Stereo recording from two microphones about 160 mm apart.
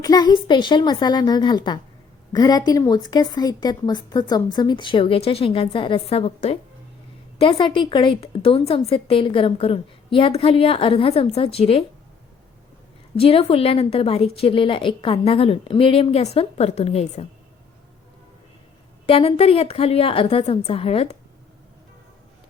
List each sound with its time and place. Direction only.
0.0 s a woman's voice: 25° left (ahead or behind)
13.1 s a woman's voice: 35° left (ahead or behind)
19.0 s a woman's voice: 35° left (ahead or behind)